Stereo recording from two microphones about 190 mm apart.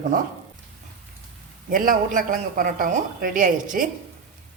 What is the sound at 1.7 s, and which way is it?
A man's voice, 45° right (ahead or behind).